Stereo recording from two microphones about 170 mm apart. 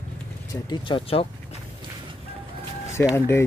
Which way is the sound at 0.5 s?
25° left (ahead or behind).